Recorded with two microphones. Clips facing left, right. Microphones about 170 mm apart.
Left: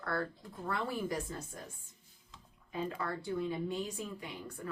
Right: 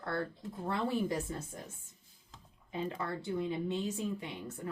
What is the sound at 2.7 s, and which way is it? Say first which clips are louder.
Speech: even; 25° right (ahead or behind).